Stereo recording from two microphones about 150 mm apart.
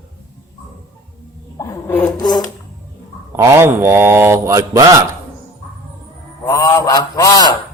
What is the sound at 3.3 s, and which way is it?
Speech, 15° right (ahead or behind).